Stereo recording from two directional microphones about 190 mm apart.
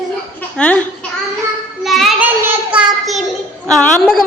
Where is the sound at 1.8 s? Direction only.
Centre (ahead or behind).